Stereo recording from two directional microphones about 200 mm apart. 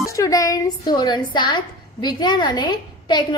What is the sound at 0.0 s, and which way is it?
Speech, 15° left (ahead or behind).